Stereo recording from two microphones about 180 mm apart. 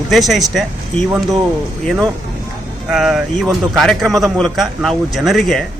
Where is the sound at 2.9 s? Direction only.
Centre (ahead or behind).